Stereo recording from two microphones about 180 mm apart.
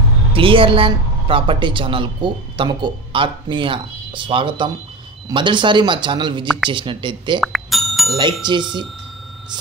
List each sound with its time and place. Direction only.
0.3 s a woman's voice: 30° right (ahead or behind)
7.3 s music: centre (ahead or behind)
8.2 s a woman's voice: 25° right (ahead or behind)